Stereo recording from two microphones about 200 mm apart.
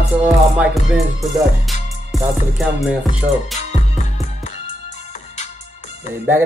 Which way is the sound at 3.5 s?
35° left (ahead or behind).